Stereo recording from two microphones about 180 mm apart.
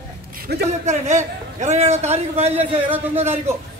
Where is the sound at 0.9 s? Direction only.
40° right (ahead or behind).